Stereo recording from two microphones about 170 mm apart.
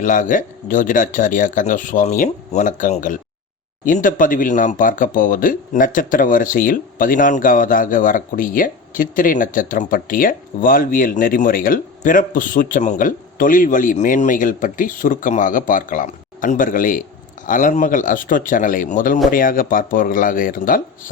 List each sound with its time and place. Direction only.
0.0 s speech: 50° left (ahead or behind)